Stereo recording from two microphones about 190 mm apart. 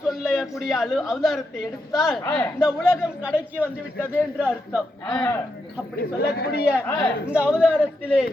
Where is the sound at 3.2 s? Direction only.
10° right (ahead or behind).